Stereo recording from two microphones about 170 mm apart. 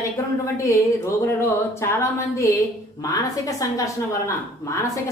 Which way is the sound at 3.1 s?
20° left (ahead or behind).